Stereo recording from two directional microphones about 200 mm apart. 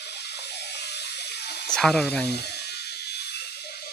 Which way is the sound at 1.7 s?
5° left (ahead or behind).